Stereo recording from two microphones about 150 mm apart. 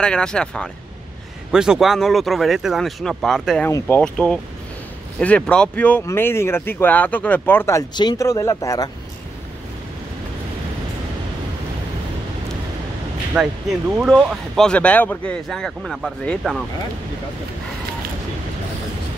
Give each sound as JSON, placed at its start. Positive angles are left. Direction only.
{"t": 0.0, "sound": "speech", "side_deg": 5}
{"t": 7.9, "sound": "speech", "side_deg": 30}
{"t": 13.3, "sound": "speech", "side_deg": -5}
{"t": 14.6, "sound": "speech", "side_deg": 10}